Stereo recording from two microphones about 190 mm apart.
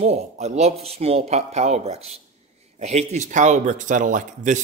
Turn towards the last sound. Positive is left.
turn(degrees=-40)  # may be behind; listen again after turning